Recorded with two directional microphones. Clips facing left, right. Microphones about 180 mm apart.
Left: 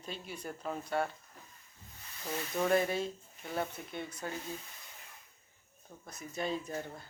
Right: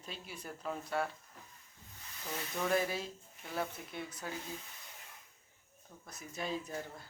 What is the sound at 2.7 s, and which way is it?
Speech, centre (ahead or behind).